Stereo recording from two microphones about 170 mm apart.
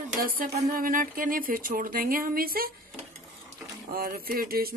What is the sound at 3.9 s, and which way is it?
Speech, 60° right (ahead or behind).